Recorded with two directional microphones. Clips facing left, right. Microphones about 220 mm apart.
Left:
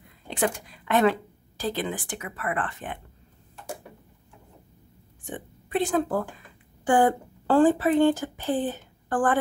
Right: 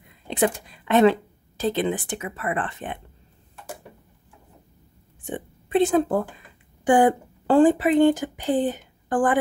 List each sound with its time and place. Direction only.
0.3 s a woman's voice: 25° right (ahead or behind)
5.2 s a woman's voice: 25° right (ahead or behind)